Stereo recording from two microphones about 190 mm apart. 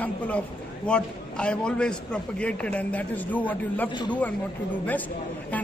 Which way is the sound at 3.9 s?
25° left (ahead or behind).